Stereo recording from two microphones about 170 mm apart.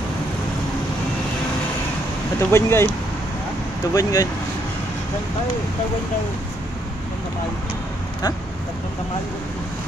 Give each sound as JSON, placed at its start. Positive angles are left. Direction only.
{"t": 2.5, "sound": "speech", "side_deg": 15}
{"t": 3.9, "sound": "speech", "side_deg": 20}